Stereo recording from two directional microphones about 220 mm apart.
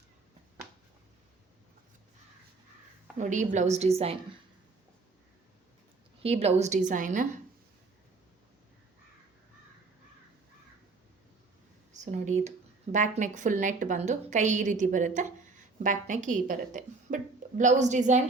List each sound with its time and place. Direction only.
3.2 s speech: 35° right (ahead or behind)
6.2 s speech: 30° right (ahead or behind)
11.9 s speech: 30° right (ahead or behind)